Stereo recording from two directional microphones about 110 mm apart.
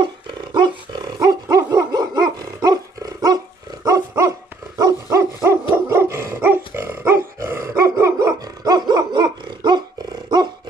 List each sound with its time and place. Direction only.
0.0 s dog: 45° right (ahead or behind)